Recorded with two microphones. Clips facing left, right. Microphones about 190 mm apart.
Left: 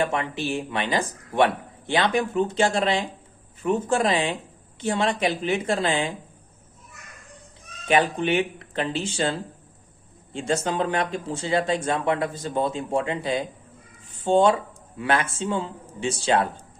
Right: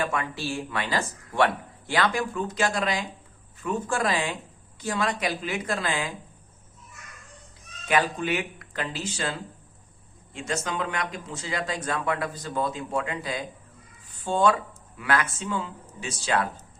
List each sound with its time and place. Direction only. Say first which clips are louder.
0.0 s speech: left 4 dB; 25° left (ahead or behind)
7.9 s speech: left 4 dB; 25° left (ahead or behind)